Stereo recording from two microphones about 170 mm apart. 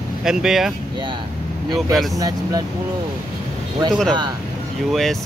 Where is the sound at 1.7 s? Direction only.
Centre (ahead or behind).